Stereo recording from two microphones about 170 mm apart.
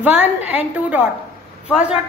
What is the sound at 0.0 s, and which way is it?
Child singing, 10° right (ahead or behind).